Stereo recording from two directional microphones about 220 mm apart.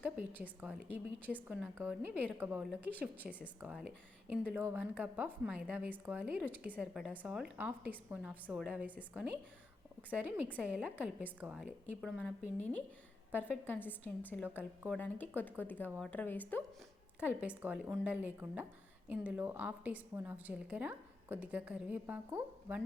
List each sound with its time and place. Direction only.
0.6 s speech: 5° right (ahead or behind)
13.7 s speech: 10° left (ahead or behind)
17.2 s speech: 5° right (ahead or behind)